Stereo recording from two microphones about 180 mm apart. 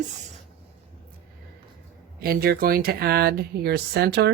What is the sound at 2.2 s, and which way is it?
Speech, 55° right (ahead or behind).